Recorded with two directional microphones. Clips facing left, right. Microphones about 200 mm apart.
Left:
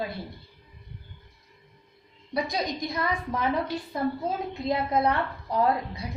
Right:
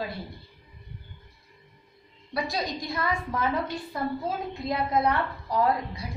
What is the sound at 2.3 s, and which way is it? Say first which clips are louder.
A woman's voice: left 1 dB; 20° left (ahead or behind).